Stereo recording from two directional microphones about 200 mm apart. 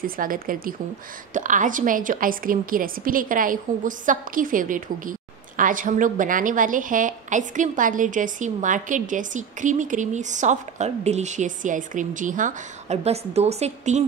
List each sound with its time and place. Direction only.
0.0 s a woman's voice: 45° right (ahead or behind)